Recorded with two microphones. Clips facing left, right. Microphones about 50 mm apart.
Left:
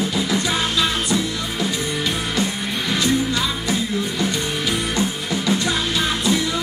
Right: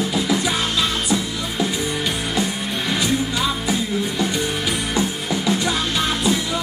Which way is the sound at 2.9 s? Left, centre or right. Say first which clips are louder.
Left 2 dB; centre.